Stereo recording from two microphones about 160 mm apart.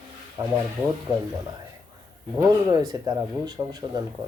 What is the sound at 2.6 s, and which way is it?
Speech, 25° right (ahead or behind).